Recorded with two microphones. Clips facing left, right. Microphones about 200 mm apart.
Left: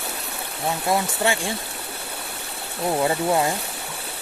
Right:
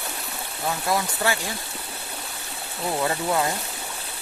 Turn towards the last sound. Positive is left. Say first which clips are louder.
# left 3 dB
turn(degrees=20)  # may be behind; listen again after turning